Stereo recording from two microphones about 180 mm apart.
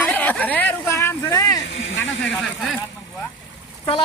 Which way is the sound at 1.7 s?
90° left.